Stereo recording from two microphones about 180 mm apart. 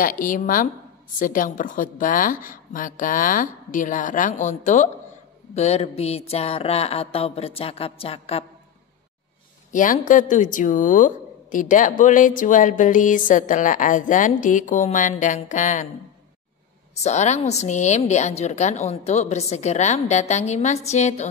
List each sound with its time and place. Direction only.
0.0 s a woman's voice: 50° left (ahead or behind)
9.7 s speech: 45° left (ahead or behind)
17.0 s a woman's voice: 40° left (ahead or behind)